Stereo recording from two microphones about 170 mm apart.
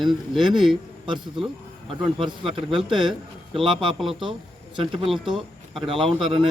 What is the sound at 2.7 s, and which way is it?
Speech, centre (ahead or behind).